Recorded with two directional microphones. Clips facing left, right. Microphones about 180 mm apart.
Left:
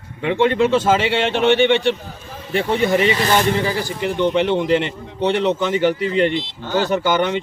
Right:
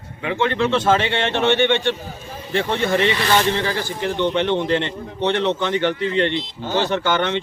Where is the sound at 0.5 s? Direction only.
5° left (ahead or behind).